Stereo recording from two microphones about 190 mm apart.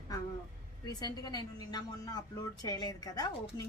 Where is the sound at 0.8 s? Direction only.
20° left (ahead or behind).